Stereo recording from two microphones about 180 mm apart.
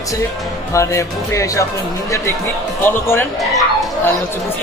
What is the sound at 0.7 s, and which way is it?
Speech, 15° left (ahead or behind).